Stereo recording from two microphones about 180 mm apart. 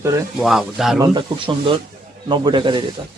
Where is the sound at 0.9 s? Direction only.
25° right (ahead or behind).